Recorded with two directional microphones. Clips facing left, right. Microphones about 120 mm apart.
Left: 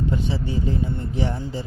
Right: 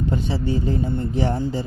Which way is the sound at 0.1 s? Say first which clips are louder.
Right 2 dB; 35° right (ahead or behind).